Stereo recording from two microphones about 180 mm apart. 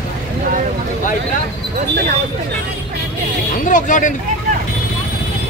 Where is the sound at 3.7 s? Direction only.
45° left (ahead or behind).